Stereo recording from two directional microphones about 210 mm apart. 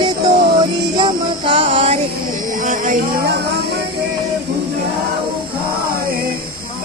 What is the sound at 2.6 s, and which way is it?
Music, 45° right (ahead or behind).